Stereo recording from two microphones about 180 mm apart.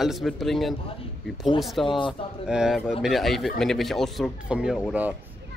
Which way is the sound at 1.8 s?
25° left (ahead or behind).